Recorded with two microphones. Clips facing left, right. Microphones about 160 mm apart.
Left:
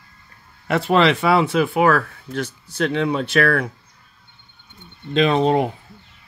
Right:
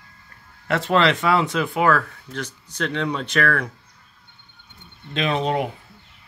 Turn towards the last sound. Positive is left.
turn(degrees=35)  # may be behind; listen again after turning